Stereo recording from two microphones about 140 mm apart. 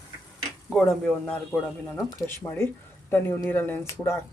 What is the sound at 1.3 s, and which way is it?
Speech, 15° left (ahead or behind).